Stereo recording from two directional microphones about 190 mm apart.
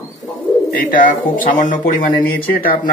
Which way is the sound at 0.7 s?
45° left (ahead or behind).